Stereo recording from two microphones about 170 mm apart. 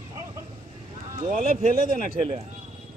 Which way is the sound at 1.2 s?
50° right (ahead or behind).